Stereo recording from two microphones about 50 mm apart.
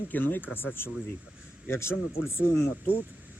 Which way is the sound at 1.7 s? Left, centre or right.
Left.